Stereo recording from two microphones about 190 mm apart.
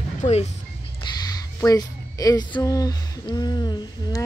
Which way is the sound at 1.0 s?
20° left (ahead or behind).